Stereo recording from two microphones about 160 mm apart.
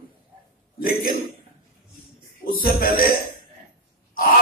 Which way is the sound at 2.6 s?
65° left (ahead or behind).